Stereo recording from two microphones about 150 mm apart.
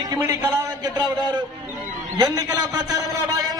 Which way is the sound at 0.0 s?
25° right (ahead or behind).